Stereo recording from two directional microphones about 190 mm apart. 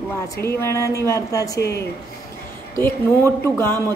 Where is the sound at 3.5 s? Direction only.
10° left (ahead or behind).